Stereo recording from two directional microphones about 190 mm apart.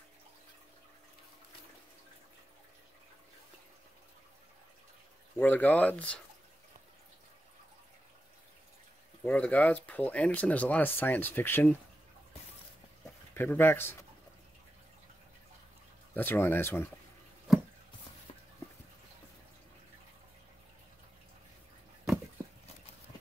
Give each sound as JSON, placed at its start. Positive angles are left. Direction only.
{"t": 5.4, "sound": "speech", "side_deg": 10}
{"t": 9.2, "sound": "speech", "side_deg": 10}
{"t": 13.3, "sound": "speech", "side_deg": 10}
{"t": 16.2, "sound": "speech", "side_deg": 10}